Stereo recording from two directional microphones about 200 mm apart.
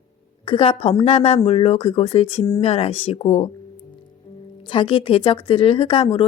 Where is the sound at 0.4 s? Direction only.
25° left (ahead or behind).